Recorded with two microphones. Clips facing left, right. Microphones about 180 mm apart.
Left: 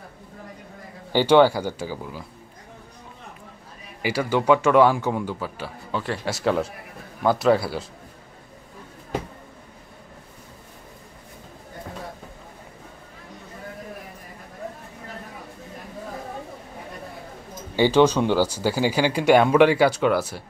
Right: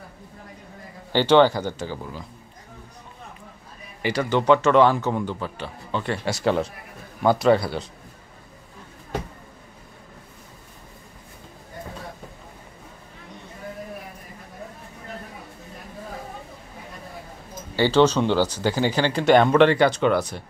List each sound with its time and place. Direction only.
1.1 s a man's voice: 10° left (ahead or behind)
4.0 s a man's voice: 10° left (ahead or behind)
17.7 s a man's voice: 15° left (ahead or behind)